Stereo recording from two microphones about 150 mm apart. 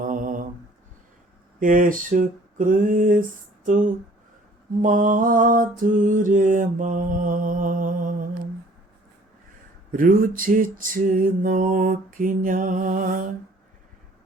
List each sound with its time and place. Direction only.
0.0 s mantra: 60° right (ahead or behind)
1.5 s mantra: 65° right (ahead or behind)
9.9 s mantra: 65° right (ahead or behind)